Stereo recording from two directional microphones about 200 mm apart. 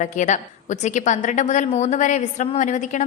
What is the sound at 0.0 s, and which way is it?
A woman's voice, 40° left (ahead or behind).